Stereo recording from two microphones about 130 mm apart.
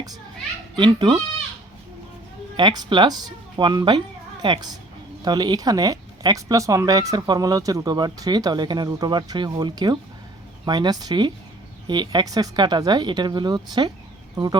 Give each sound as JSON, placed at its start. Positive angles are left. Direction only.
{"t": 0.8, "sound": "speech", "side_deg": -35}
{"t": 2.6, "sound": "speech", "side_deg": -35}